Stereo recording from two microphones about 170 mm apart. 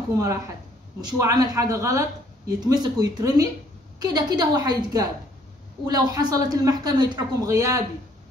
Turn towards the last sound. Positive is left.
turn(degrees=-20)  # may be behind; listen again after turning